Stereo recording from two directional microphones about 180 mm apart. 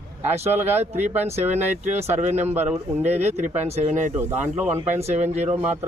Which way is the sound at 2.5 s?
10° right (ahead or behind).